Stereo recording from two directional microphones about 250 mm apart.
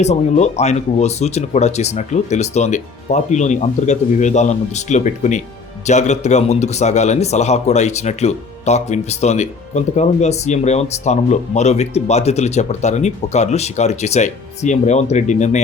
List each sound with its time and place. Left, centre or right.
0.0 s speech: left